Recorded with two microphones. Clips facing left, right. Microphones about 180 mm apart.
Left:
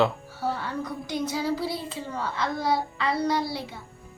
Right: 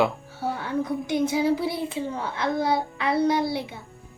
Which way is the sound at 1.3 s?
20° right (ahead or behind).